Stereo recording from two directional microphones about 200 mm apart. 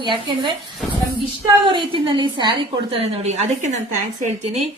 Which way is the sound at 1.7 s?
25° right (ahead or behind).